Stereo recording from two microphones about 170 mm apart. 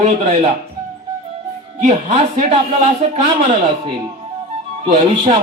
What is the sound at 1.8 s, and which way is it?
Speech, 45° right (ahead or behind).